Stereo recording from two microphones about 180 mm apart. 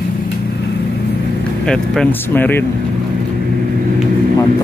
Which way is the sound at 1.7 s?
5° left (ahead or behind).